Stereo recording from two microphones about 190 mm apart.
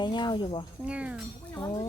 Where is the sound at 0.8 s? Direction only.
5° right (ahead or behind).